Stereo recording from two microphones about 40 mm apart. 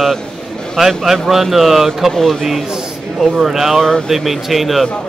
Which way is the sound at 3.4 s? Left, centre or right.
Centre.